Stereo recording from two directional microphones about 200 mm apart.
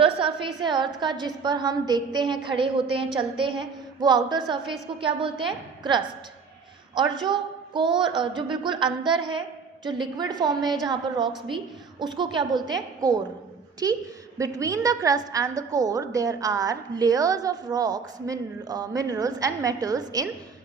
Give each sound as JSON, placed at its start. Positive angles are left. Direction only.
{"t": 0.0, "sound": "a woman's voice", "side_deg": -25}